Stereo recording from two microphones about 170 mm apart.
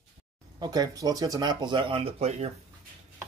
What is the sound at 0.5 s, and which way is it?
Speech, 20° right (ahead or behind).